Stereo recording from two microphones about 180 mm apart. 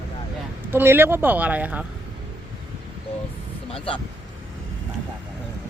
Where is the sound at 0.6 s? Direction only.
10° right (ahead or behind).